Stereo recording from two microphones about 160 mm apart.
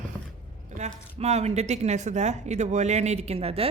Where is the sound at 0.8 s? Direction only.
45° right (ahead or behind).